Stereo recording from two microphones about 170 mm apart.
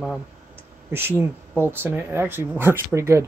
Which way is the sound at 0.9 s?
15° right (ahead or behind).